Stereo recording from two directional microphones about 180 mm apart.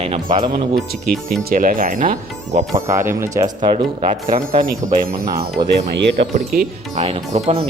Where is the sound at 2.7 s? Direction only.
15° right (ahead or behind).